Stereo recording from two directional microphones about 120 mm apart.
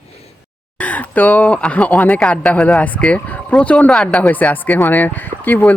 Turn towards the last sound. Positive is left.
turn(degrees=15)  # may be behind; listen again after turning